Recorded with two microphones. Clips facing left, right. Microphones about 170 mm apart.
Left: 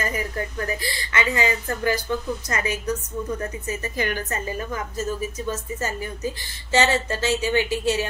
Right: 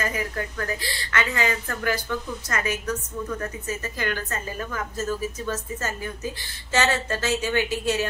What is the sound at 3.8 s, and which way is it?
Speech, 15° left (ahead or behind).